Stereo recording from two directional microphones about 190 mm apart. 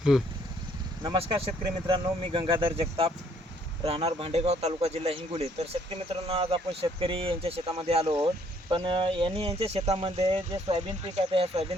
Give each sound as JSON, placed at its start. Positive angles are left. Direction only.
{"t": 1.0, "sound": "speech", "side_deg": -25}